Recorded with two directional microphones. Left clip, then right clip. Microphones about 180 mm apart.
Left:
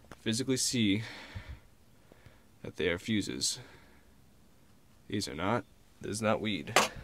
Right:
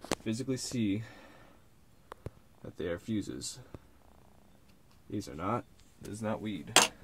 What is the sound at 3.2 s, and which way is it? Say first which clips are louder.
Speech: left 7 dB; 30° left (ahead or behind).